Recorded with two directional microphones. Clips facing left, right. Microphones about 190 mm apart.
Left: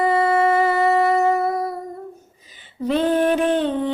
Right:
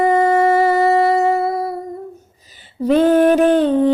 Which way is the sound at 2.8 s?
45° right (ahead or behind).